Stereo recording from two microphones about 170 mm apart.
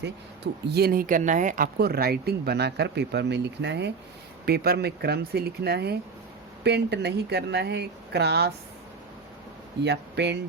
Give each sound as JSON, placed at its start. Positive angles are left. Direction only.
{"t": 0.7, "sound": "speech", "side_deg": -65}
{"t": 4.4, "sound": "speech", "side_deg": -70}
{"t": 9.8, "sound": "speech", "side_deg": -85}